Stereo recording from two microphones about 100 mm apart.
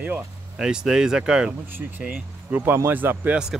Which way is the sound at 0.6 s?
5° right (ahead or behind).